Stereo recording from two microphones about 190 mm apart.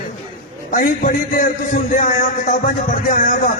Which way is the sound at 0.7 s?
40° left (ahead or behind).